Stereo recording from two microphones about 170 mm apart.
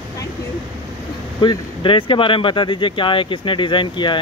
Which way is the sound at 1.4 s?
25° left (ahead or behind).